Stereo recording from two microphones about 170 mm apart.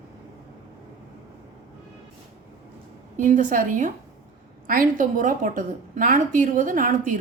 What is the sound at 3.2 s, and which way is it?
A woman's voice, 45° right (ahead or behind).